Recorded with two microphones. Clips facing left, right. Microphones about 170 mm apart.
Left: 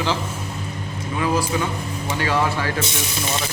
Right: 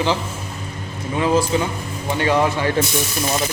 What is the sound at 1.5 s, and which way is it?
A man's voice, 25° right (ahead or behind).